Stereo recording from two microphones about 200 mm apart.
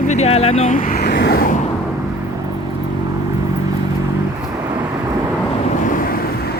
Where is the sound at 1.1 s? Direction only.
55° left (ahead or behind).